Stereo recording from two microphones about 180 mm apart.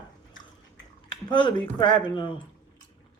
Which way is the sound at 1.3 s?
25° left (ahead or behind).